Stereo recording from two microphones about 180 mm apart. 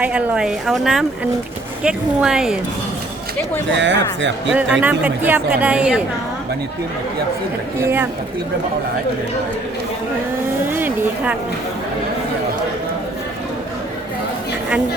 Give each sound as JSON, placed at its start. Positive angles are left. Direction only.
{"t": 0.0, "sound": "a woman's voice", "side_deg": -5}
{"t": 3.8, "sound": "speech", "side_deg": -85}
{"t": 4.5, "sound": "speech", "side_deg": -10}
{"t": 7.8, "sound": "speech", "side_deg": -15}
{"t": 10.7, "sound": "a sound", "side_deg": -10}